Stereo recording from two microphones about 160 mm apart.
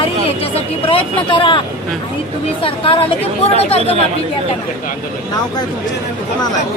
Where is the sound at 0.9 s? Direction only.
35° left (ahead or behind).